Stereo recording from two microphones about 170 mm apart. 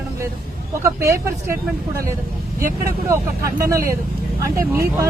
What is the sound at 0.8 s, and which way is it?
Speech, 15° right (ahead or behind).